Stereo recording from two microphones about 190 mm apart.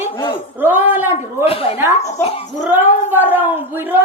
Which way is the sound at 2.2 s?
30° left (ahead or behind).